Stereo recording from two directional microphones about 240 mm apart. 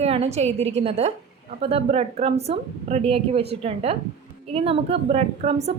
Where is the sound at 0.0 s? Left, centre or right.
Right.